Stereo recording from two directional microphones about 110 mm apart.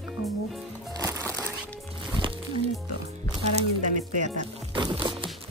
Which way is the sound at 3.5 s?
90° right.